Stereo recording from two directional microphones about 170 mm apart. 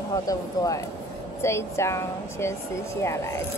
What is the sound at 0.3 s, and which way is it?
A woman's voice, 20° left (ahead or behind).